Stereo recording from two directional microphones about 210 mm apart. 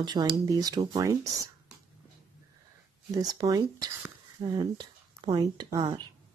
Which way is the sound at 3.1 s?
15° right (ahead or behind).